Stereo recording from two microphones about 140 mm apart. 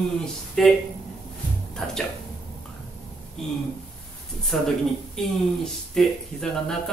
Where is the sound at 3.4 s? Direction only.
5° left (ahead or behind).